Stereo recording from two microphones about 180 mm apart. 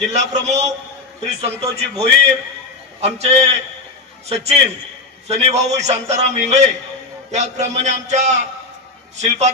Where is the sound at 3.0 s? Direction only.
35° right (ahead or behind).